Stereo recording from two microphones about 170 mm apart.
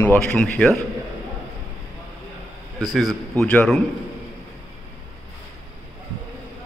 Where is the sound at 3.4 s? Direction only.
5° left (ahead or behind).